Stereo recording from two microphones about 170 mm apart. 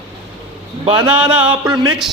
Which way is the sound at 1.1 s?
5° right (ahead or behind).